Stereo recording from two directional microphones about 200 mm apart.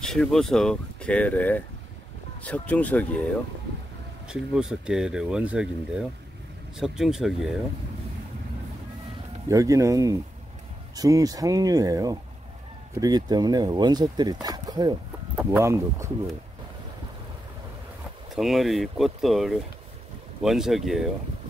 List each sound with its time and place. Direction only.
0.0 s speech: 5° left (ahead or behind)
4.3 s speech: 5° right (ahead or behind)
9.5 s speech: 15° right (ahead or behind)
18.3 s speech: centre (ahead or behind)